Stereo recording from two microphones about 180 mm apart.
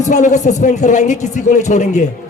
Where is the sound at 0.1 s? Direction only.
40° left (ahead or behind).